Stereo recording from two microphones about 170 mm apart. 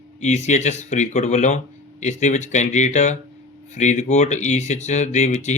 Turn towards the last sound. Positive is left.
turn(degrees=45)  # may be behind; listen again after turning